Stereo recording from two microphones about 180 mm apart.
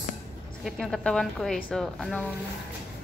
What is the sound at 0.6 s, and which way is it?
A woman's voice, centre (ahead or behind).